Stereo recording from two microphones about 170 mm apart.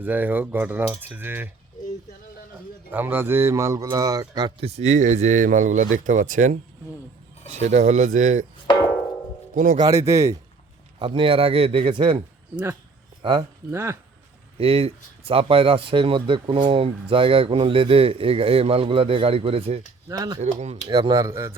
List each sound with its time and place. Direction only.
0.0 s speech: 10° right (ahead or behind)
2.9 s speech: 10° right (ahead or behind)
4.6 s speech: 40° right (ahead or behind)
7.6 s speech: 45° right (ahead or behind)
8.7 s music: 30° left (ahead or behind)
9.6 s speech: 50° right (ahead or behind)
9.8 s speech: 15° right (ahead or behind)
11.0 s speech: 30° right (ahead or behind)
13.2 s speech: 30° right (ahead or behind)
13.7 s speech: 15° right (ahead or behind)
14.6 s speech: 35° right (ahead or behind)
20.1 s speech: 20° right (ahead or behind)
20.4 s speech: 40° right (ahead or behind)
20.8 s speech: 25° right (ahead or behind)